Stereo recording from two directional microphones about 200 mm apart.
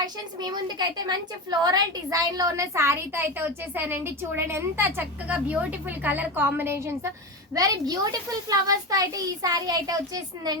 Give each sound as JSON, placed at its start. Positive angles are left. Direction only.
{"t": 0.0, "sound": "a woman's voice", "side_deg": -20}